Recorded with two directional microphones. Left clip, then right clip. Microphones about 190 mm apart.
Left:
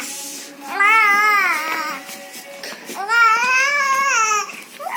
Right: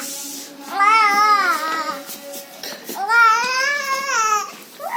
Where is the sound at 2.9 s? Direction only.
Centre (ahead or behind).